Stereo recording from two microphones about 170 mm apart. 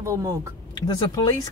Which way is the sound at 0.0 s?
20° right (ahead or behind).